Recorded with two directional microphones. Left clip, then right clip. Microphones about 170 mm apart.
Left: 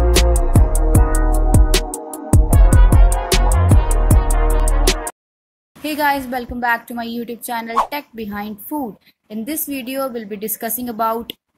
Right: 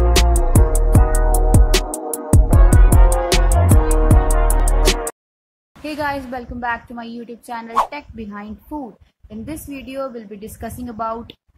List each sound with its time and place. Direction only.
0.1 s music: centre (ahead or behind)
5.8 s a woman's voice: 15° left (ahead or behind)